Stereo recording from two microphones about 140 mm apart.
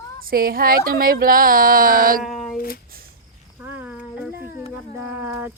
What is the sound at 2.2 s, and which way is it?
Child singing, centre (ahead or behind).